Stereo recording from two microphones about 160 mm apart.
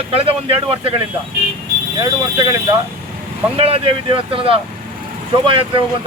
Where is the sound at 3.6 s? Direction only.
35° right (ahead or behind).